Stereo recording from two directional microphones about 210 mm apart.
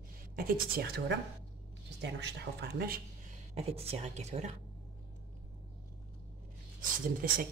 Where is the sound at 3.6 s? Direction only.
30° right (ahead or behind).